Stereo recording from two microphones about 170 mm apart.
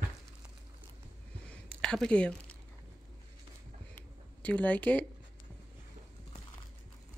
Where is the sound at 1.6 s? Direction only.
5° left (ahead or behind).